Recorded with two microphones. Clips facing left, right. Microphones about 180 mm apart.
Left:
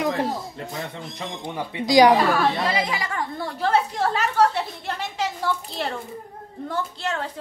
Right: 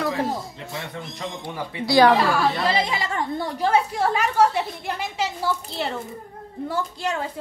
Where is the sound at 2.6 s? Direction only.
30° right (ahead or behind).